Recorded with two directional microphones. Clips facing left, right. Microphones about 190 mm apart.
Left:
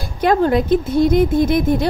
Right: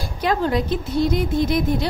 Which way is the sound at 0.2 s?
55° left (ahead or behind).